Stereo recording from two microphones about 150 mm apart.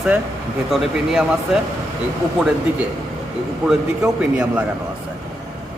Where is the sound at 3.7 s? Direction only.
5° right (ahead or behind).